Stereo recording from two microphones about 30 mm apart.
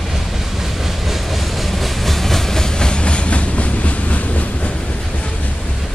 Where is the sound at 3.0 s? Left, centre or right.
Left.